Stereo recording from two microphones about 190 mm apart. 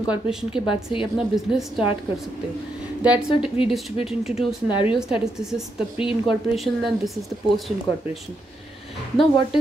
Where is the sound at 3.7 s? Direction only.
Centre (ahead or behind).